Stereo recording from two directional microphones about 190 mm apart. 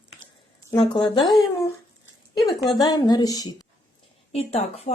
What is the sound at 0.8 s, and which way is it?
Speech, 30° left (ahead or behind).